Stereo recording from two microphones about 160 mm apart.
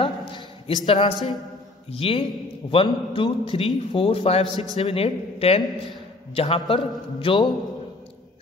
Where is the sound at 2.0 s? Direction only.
35° left (ahead or behind).